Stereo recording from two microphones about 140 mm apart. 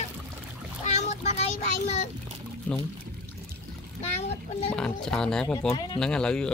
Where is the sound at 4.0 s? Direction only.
50° left (ahead or behind).